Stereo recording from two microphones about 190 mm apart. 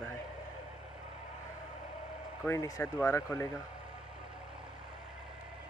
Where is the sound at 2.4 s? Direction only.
15° left (ahead or behind).